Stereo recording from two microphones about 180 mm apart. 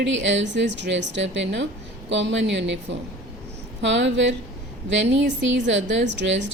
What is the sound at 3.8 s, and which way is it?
A woman's voice, 85° right.